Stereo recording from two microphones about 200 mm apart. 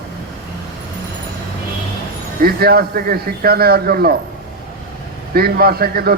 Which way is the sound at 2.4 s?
50° right (ahead or behind).